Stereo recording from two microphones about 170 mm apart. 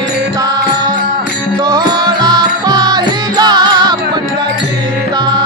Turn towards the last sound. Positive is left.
turn(degrees=-25)  # may be behind; listen again after turning